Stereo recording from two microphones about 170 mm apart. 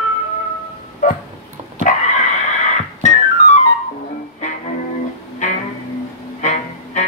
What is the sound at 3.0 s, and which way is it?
Music, 45° left (ahead or behind).